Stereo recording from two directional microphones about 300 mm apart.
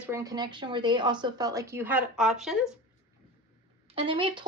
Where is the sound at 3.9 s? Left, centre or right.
Centre.